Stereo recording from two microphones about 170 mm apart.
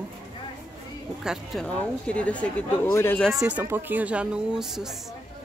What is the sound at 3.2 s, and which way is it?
Speech, 5° right (ahead or behind).